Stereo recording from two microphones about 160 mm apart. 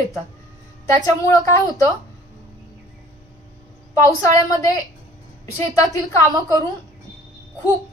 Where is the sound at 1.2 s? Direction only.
20° left (ahead or behind).